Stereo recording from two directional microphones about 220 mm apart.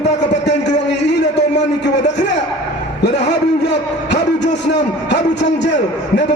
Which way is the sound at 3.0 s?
50° left (ahead or behind).